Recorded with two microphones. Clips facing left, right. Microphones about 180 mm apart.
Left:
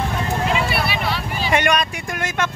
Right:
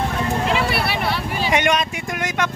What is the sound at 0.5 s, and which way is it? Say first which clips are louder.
Clip-clop: right 1 dB; 65° right (ahead or behind).